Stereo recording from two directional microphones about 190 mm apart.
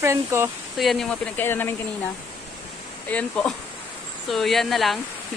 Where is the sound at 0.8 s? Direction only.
Centre (ahead or behind).